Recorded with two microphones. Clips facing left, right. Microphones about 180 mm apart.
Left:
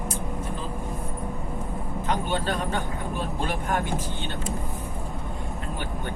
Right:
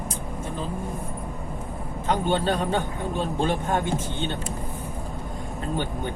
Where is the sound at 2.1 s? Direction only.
30° right (ahead or behind).